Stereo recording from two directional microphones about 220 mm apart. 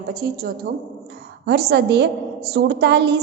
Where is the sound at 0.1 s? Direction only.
45° right (ahead or behind).